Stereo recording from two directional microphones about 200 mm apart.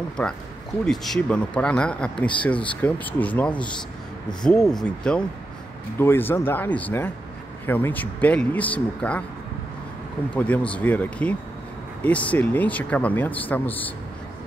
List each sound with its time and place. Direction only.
0.2 s speech: 5° left (ahead or behind)
10.3 s speech: 5° left (ahead or behind)